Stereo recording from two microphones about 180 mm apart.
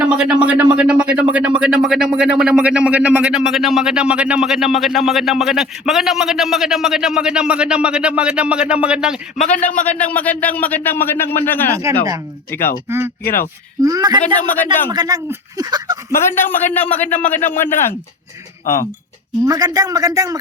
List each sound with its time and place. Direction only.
0.0 s speech: 5° right (ahead or behind)
9.4 s a man's voice: 45° left (ahead or behind)
9.8 s speech: 10° left (ahead or behind)
13.8 s speech: 20° right (ahead or behind)
14.5 s speech: 10° left (ahead or behind)
14.8 s speech: 20° right (ahead or behind)
16.1 s speech: 10° left (ahead or behind)
19.5 s speech: 20° right (ahead or behind)